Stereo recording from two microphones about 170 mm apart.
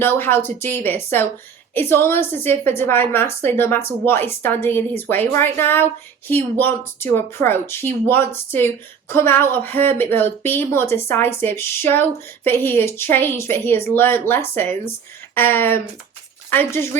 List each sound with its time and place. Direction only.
0.0 s a woman's voice: 15° left (ahead or behind)